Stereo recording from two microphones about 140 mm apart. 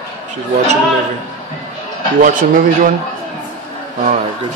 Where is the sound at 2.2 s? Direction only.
75° right (ahead or behind).